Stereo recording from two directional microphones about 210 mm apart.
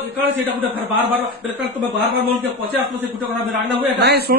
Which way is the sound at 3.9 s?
55° right (ahead or behind).